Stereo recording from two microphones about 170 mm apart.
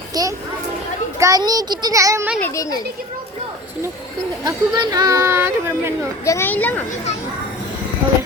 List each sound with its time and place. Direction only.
0.1 s children playing: 20° right (ahead or behind)
1.2 s speech: 20° right (ahead or behind)
2.4 s speech: 20° left (ahead or behind)
4.4 s speech: 25° right (ahead or behind)
6.2 s speech: 15° left (ahead or behind)